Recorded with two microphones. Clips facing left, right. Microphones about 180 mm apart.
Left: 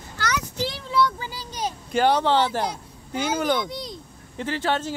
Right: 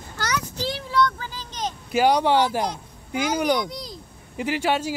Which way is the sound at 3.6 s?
Centre (ahead or behind).